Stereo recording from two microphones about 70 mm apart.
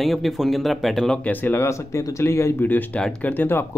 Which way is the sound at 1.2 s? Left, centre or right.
Left.